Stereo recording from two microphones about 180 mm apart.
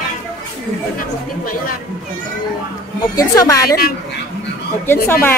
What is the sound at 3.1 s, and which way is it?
Speech, 20° left (ahead or behind).